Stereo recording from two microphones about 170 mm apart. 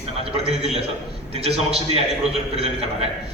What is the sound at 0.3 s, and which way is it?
A man's voice, 35° right (ahead or behind).